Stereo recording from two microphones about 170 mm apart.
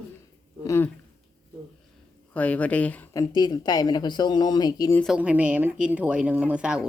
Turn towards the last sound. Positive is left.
turn(degrees=-5)  # may be behind; listen again after turning